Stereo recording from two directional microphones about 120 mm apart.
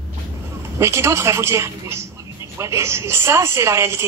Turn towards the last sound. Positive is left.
turn(degrees=-20)  # may be behind; listen again after turning